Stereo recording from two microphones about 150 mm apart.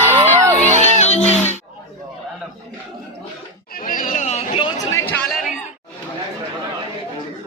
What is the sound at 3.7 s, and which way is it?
Chatter, 65° left (ahead or behind).